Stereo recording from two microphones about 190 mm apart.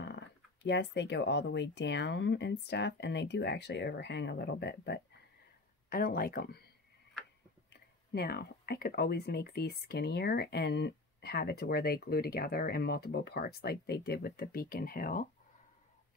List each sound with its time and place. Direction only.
0.0 s speech: 65° left (ahead or behind)
5.9 s speech: 50° left (ahead or behind)
7.7 s speech: 55° left (ahead or behind)